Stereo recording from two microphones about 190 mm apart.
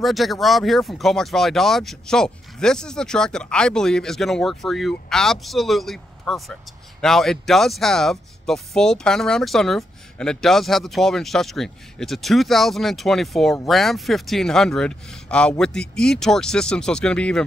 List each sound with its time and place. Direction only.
0.0 s speech: centre (ahead or behind)